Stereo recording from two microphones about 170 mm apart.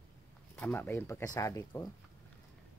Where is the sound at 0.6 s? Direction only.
10° left (ahead or behind).